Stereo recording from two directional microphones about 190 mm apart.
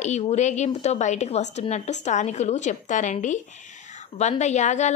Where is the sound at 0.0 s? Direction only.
35° left (ahead or behind).